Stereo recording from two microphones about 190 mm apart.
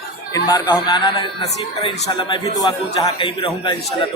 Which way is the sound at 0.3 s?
20° left (ahead or behind).